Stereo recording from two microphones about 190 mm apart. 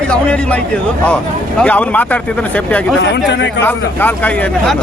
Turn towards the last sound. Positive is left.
turn(degrees=10)  # may be behind; listen again after turning